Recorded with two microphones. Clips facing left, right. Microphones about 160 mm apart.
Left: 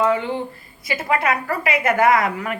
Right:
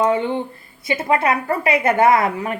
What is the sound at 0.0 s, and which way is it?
Speech, 25° right (ahead or behind).